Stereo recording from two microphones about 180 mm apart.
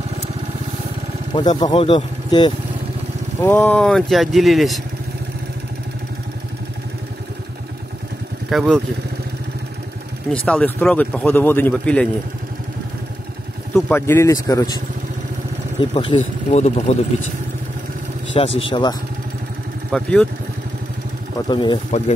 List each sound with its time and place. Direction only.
1.3 s speech: 25° left (ahead or behind)
3.3 s speech: 10° left (ahead or behind)
8.5 s speech: centre (ahead or behind)
10.3 s a man's voice: 5° left (ahead or behind)
13.7 s a man's voice: 10° left (ahead or behind)
15.8 s speech: 30° left (ahead or behind)
16.5 s speech: 40° left (ahead or behind)
18.6 s speech: 25° left (ahead or behind)
19.9 s speech: 5° left (ahead or behind)
21.5 s speech: 25° left (ahead or behind)